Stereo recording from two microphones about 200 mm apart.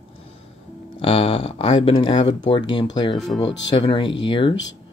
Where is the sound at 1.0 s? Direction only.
30° left (ahead or behind).